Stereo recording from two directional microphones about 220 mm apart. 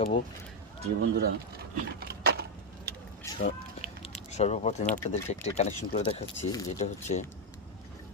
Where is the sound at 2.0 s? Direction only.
45° right (ahead or behind).